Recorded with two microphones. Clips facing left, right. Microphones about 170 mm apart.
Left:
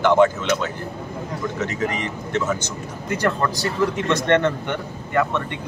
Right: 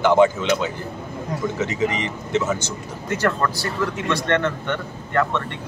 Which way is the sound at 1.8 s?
55° left (ahead or behind).